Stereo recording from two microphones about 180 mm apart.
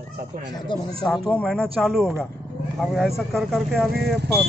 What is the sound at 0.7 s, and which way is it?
Speech, 25° left (ahead or behind).